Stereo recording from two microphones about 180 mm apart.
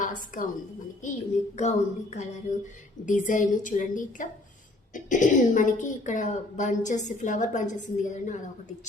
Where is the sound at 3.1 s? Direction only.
45° left (ahead or behind).